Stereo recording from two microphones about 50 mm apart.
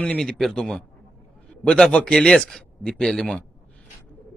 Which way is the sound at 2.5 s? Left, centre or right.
Centre.